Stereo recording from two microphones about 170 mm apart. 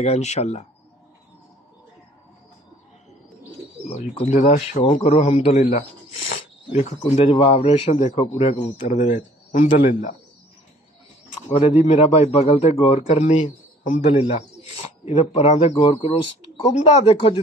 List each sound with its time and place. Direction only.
0.0 s a man's voice: 40° left (ahead or behind)
4.0 s a man's voice: 45° left (ahead or behind)
11.8 s a man's voice: 40° left (ahead or behind)